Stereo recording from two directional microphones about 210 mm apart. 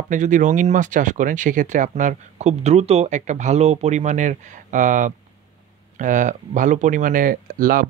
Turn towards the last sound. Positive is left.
turn(degrees=-40)  # may be behind; listen again after turning